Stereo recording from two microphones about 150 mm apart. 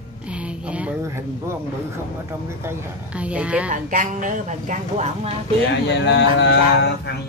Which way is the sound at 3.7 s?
60° right (ahead or behind).